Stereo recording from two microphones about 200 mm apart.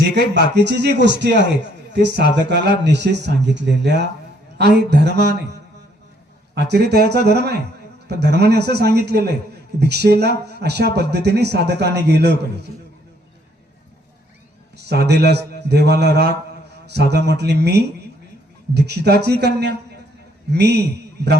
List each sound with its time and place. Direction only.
0.2 s a man's voice: 50° left (ahead or behind)
0.5 s speech: 55° right (ahead or behind)
14.8 s speech: 55° right (ahead or behind)